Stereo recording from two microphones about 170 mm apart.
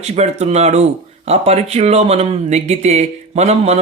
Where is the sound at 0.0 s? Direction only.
40° right (ahead or behind).